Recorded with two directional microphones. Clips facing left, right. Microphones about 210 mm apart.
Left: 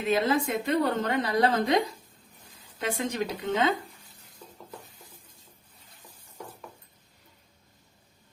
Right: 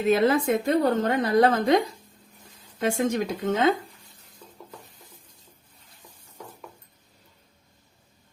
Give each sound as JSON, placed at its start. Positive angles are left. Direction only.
{"t": 0.1, "sound": "a woman's voice", "side_deg": -55}